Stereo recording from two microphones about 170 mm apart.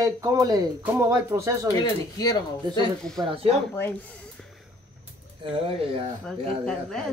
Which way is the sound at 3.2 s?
30° right (ahead or behind).